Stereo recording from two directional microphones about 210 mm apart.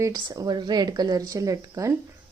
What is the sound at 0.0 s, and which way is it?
Speech, 15° right (ahead or behind).